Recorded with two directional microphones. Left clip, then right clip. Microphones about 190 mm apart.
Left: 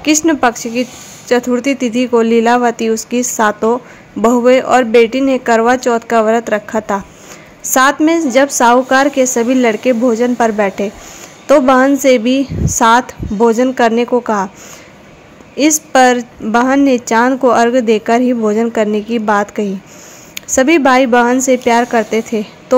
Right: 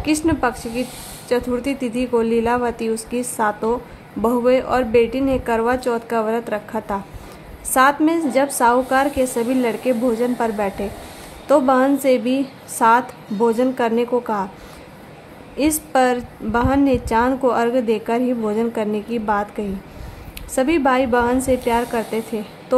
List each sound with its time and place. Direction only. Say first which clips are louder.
0.0 s speech: left 8 dB; 20° left (ahead or behind)
15.5 s speech: left 7 dB; 25° left (ahead or behind)